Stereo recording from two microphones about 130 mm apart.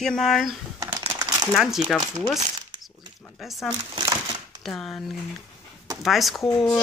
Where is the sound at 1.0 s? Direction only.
30° right (ahead or behind).